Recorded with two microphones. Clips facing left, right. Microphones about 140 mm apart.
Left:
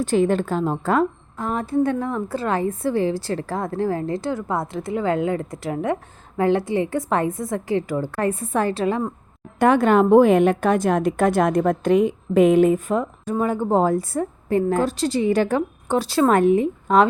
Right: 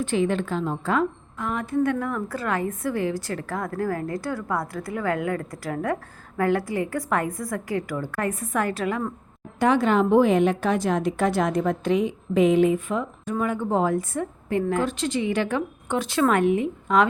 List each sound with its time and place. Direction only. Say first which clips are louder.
0.0 s a woman's voice: left 4 dB; 40° left (ahead or behind)
9.6 s a woman's voice: left 4 dB; 55° left (ahead or behind); by 17.1 s 35° left (ahead or behind)